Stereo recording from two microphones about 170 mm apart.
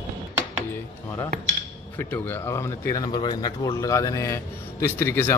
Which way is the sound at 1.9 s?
15° left (ahead or behind).